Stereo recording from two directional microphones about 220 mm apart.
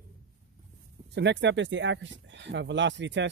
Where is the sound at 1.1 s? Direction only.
50° right (ahead or behind).